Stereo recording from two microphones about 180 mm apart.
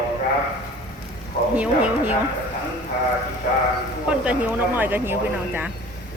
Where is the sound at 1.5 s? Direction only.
5° right (ahead or behind).